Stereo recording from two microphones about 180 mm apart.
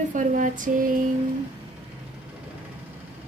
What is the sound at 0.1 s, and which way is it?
Speech, 45° right (ahead or behind).